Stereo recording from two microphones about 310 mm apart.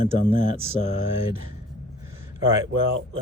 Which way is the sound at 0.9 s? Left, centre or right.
Left.